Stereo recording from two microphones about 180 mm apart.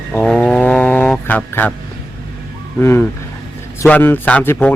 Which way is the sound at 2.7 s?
15° left (ahead or behind).